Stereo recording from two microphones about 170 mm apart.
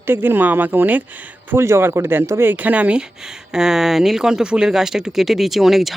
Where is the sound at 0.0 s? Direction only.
15° right (ahead or behind).